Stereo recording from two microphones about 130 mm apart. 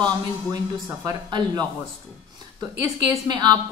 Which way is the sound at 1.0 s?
30° right (ahead or behind).